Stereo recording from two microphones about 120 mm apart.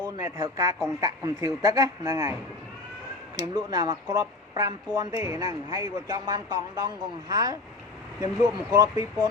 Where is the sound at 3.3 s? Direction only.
35° right (ahead or behind).